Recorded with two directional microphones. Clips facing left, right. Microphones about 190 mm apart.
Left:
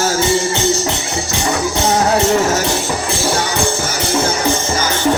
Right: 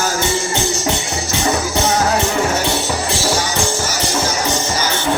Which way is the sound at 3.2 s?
55° left (ahead or behind).